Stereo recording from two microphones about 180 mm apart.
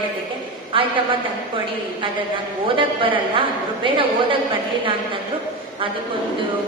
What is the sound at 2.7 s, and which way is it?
A woman's voice, 30° right (ahead or behind).